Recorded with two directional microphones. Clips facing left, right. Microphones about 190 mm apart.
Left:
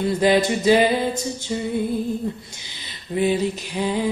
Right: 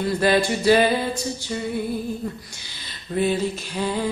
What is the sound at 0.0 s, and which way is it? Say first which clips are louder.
Music: left 2 dB; 20° left (ahead or behind).